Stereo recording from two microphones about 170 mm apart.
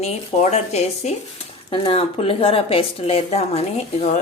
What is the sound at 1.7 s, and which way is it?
A woman's voice, 30° left (ahead or behind).